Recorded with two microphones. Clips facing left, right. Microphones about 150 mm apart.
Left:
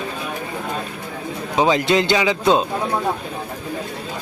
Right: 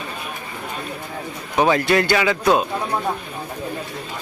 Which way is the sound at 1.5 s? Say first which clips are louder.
Even; 15° left (ahead or behind).